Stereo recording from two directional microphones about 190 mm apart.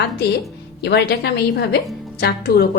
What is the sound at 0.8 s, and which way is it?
A woman's voice, 60° left (ahead or behind).